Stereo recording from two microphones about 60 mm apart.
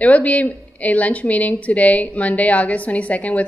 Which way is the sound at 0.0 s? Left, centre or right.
Left.